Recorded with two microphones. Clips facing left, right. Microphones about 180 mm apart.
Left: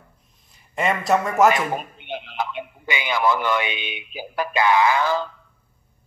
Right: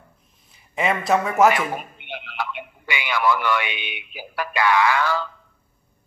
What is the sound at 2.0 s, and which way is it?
A man's voice, 20° left (ahead or behind).